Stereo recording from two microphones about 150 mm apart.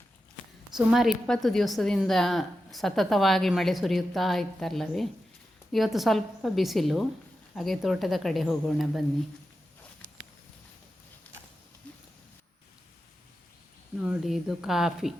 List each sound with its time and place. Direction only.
0.8 s a woman's voice: 5° right (ahead or behind)
14.0 s a woman's voice: 5° right (ahead or behind)